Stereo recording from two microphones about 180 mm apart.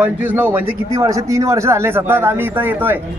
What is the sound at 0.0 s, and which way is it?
A man's voice, 15° right (ahead or behind).